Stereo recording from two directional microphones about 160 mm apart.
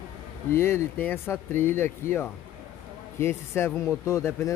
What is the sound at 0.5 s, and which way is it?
Speech, 15° left (ahead or behind).